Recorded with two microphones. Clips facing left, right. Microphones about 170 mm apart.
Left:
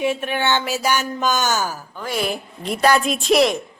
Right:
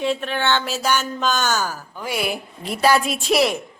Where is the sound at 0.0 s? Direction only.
15° left (ahead or behind).